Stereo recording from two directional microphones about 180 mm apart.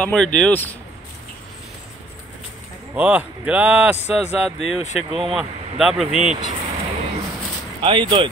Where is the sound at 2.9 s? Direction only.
5° right (ahead or behind).